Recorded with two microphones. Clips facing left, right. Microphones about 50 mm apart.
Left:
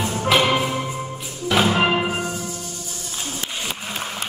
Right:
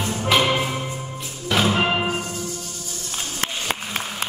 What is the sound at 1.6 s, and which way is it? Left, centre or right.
Music, centre.